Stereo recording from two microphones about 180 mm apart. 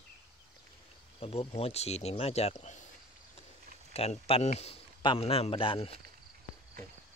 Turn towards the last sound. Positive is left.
turn(degrees=30)  # may be behind; listen again after turning